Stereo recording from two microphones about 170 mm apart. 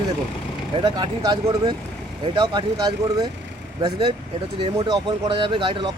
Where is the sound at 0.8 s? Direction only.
25° right (ahead or behind).